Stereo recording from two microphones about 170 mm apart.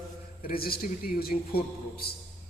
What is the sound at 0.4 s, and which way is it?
A woman's voice, 60° left (ahead or behind).